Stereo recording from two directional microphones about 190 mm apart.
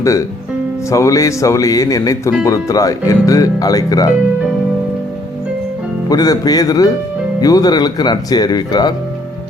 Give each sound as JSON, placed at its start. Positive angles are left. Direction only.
{"t": 0.0, "sound": "speech", "side_deg": 15}
{"t": 6.1, "sound": "speech", "side_deg": 20}